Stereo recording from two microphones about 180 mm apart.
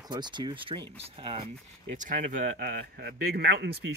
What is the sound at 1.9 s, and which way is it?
Speech, 45° right (ahead or behind).